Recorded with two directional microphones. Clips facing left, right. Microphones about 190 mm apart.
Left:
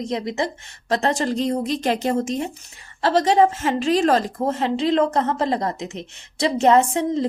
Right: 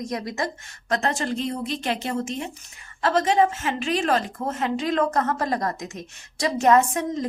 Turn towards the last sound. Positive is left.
turn(degrees=30)  # may be behind; listen again after turning